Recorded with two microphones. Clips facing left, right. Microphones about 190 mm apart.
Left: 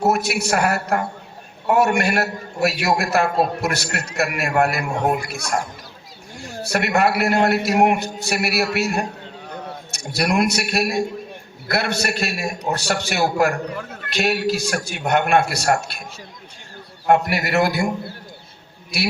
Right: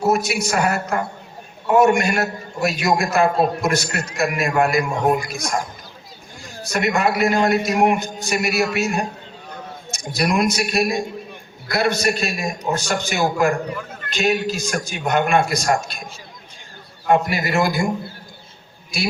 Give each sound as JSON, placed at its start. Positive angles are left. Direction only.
{"t": 0.1, "sound": "a man's voice", "side_deg": 60}
{"t": 17.1, "sound": "a man's voice", "side_deg": 65}
{"t": 18.9, "sound": "a man's voice", "side_deg": 65}